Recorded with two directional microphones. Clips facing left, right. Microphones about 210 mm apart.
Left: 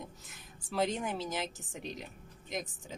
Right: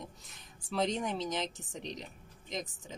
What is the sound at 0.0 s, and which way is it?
A woman's voice, 5° left (ahead or behind).